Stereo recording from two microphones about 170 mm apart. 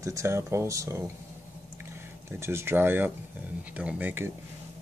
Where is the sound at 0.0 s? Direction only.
20° right (ahead or behind).